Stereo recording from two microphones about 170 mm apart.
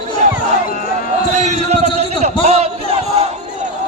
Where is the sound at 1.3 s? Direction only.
40° right (ahead or behind).